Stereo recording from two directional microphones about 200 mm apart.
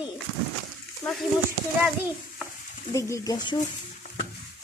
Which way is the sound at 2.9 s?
15° left (ahead or behind).